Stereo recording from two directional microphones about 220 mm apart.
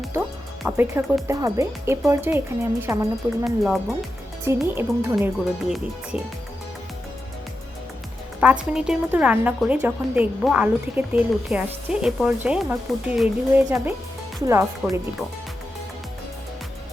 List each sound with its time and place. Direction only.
0.2 s music: 5° right (ahead or behind)
1.3 s speech: 15° right (ahead or behind)
3.4 s a woman's voice: centre (ahead or behind)
8.7 s a woman's voice: 5° right (ahead or behind)